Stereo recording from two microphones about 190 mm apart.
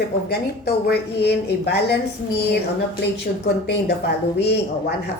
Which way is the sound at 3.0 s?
60° left (ahead or behind).